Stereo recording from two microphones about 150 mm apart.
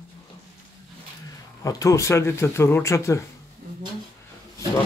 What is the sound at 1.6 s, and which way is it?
Speech, 20° left (ahead or behind).